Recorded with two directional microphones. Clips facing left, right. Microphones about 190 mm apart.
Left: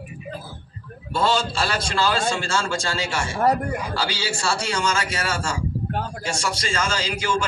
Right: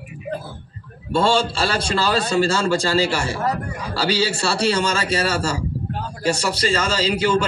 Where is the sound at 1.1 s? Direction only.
30° right (ahead or behind).